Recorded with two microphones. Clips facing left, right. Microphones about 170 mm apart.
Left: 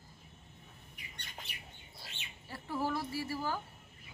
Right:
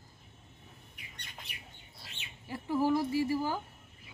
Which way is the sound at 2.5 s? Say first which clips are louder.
Right 7 dB; 15° right (ahead or behind).